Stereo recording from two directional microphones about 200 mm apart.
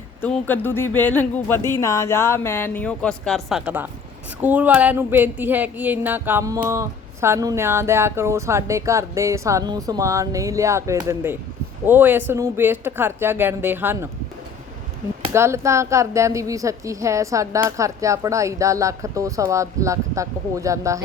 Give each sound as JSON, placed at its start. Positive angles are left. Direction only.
{"t": 0.2, "sound": "speech", "side_deg": 10}
{"t": 15.3, "sound": "speech", "side_deg": -15}